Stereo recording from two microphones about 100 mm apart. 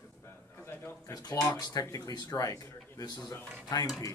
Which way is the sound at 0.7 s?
25° left (ahead or behind).